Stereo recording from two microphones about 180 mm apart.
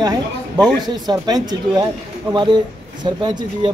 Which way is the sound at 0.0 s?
20° right (ahead or behind).